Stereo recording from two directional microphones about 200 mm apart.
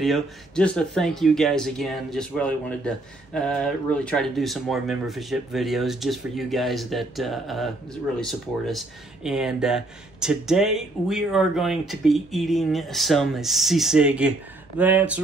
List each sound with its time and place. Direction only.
0.0 s speech: centre (ahead or behind)